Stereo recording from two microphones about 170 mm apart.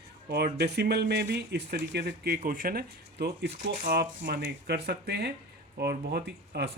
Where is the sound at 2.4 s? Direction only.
55° right (ahead or behind).